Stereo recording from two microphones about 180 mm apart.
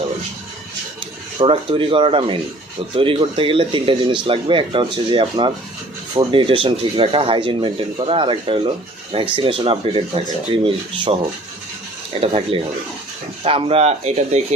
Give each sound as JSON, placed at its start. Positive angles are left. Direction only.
{"t": 1.4, "sound": "speech", "side_deg": -30}
{"t": 12.2, "sound": "speech", "side_deg": -30}